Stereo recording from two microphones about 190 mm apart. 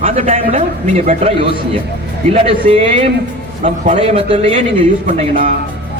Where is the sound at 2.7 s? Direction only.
30° right (ahead or behind).